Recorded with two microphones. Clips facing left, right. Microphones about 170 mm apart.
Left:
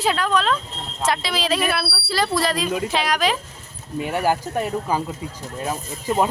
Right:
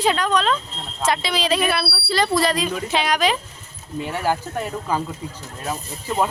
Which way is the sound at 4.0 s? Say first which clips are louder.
Left 2 dB; 15° left (ahead or behind).